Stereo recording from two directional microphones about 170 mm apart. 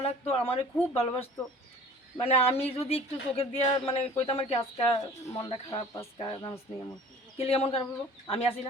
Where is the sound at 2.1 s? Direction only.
35° left (ahead or behind).